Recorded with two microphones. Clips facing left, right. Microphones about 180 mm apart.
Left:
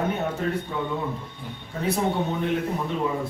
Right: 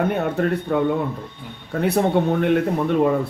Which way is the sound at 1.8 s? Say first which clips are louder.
Right 6 dB; 65° right (ahead or behind).